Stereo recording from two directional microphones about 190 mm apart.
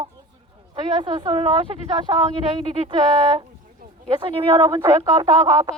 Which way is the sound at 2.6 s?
25° right (ahead or behind).